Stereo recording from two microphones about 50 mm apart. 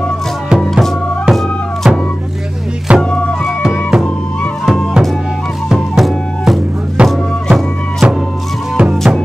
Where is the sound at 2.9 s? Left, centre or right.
Right.